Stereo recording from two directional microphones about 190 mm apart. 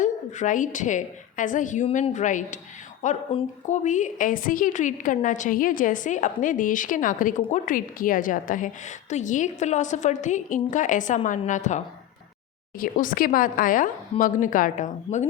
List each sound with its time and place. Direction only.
0.0 s a woman's voice: 40° left (ahead or behind)
12.8 s a woman's voice: 45° left (ahead or behind)